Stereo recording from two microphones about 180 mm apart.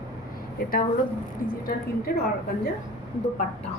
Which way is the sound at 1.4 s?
50° left (ahead or behind).